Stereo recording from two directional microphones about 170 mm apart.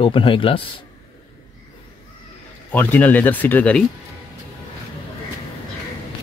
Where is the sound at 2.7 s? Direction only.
10° left (ahead or behind).